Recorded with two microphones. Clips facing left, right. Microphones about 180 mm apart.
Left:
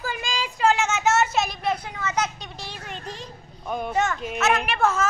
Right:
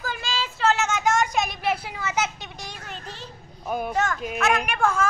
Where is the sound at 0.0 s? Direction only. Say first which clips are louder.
Left 1 dB; 10° left (ahead or behind).